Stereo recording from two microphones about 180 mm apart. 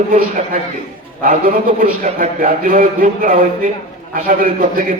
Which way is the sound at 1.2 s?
50° right (ahead or behind).